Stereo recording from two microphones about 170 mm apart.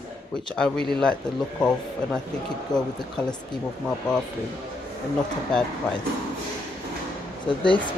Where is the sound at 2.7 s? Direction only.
25° left (ahead or behind).